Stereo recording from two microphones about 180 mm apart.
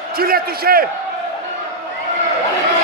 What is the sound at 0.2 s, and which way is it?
Speech, 55° right (ahead or behind).